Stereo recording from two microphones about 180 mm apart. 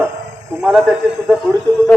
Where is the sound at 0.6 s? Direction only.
Centre (ahead or behind).